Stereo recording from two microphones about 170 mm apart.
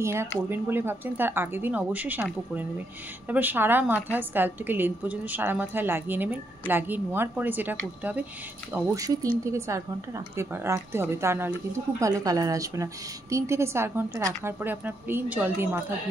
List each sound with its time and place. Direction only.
0.0 s speech: 15° right (ahead or behind)
3.3 s speech: 10° right (ahead or behind)
8.7 s speech: 20° right (ahead or behind)